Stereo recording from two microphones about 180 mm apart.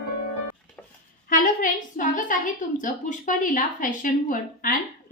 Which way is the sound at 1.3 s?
45° left (ahead or behind).